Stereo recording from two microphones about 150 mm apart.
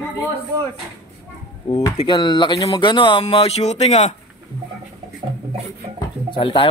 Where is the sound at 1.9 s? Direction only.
30° left (ahead or behind).